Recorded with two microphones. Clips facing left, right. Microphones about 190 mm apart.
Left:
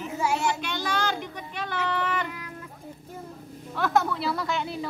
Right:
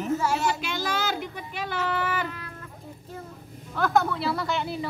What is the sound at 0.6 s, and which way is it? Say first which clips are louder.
Speech: even; 10° right (ahead or behind).